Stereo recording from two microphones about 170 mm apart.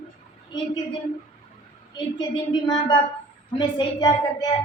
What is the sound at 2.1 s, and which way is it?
A woman's voice, 25° left (ahead or behind).